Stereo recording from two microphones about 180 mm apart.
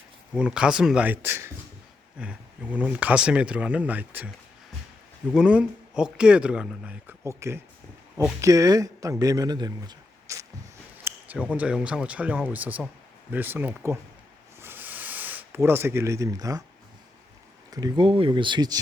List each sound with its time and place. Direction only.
0.3 s speech: 5° right (ahead or behind)
5.3 s speech: 5° right (ahead or behind)
11.0 s speech: 10° right (ahead or behind)
14.6 s a sound: 10° right (ahead or behind)
17.7 s speech: 20° right (ahead or behind)